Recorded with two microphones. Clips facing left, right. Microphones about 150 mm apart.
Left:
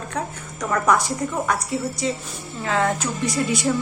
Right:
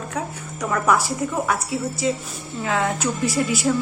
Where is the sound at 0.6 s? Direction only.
5° right (ahead or behind).